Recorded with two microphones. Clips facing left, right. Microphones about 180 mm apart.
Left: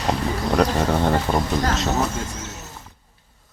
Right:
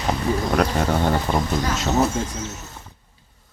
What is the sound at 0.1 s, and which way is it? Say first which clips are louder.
Speech: right 1 dB; centre (ahead or behind).